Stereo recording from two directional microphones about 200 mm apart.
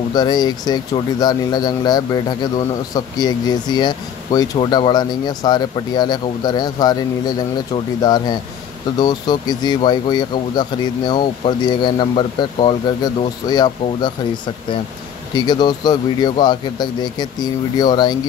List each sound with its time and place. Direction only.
0.1 s a man's voice: 20° left (ahead or behind)
15.3 s a man's voice: 20° left (ahead or behind)